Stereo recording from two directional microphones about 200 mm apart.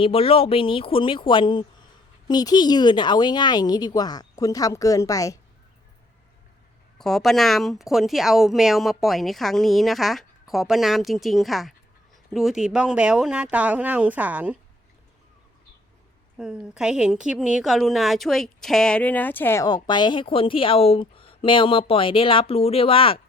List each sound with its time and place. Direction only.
0.0 s a woman's voice: 30° left (ahead or behind)
7.0 s speech: centre (ahead or behind)
16.4 s a woman's voice: 5° right (ahead or behind); by 23.2 s 25° left (ahead or behind)